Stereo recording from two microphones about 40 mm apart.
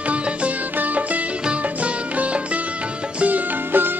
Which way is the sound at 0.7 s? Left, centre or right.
Right.